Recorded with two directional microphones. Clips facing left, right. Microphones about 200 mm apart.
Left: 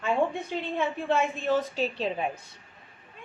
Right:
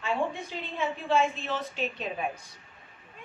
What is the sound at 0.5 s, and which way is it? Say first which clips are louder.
Speech: left 6 dB; 55° left (ahead or behind).